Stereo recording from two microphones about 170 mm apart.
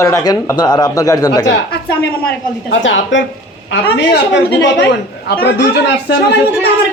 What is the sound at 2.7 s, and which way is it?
A man's voice, 90° left.